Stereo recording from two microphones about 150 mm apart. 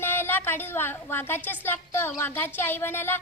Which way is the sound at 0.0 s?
15° left (ahead or behind).